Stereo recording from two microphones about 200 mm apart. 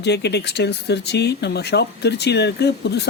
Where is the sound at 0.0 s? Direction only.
55° left (ahead or behind).